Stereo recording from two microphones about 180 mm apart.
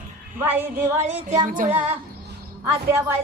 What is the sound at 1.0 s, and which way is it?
Music, 40° right (ahead or behind).